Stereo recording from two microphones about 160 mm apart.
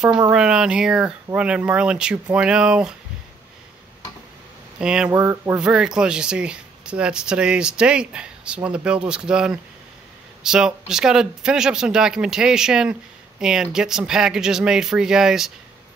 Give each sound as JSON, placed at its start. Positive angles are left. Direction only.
{"t": 0.3, "sound": "speech", "side_deg": -5}
{"t": 4.7, "sound": "speech", "side_deg": -5}
{"t": 5.2, "sound": "a sound", "side_deg": -15}
{"t": 5.6, "sound": "speech", "side_deg": -5}